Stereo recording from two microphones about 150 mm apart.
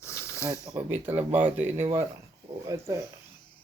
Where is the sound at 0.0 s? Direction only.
20° left (ahead or behind).